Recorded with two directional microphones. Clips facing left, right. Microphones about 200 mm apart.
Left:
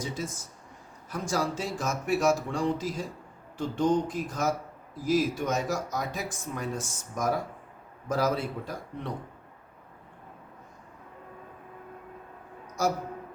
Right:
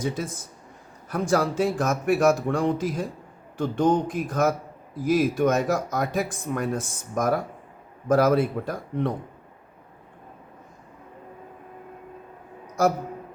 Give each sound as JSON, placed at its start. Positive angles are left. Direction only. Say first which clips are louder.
{"t": 0.0, "sound": "speech", "louder": "right 6 dB", "side_deg": -55}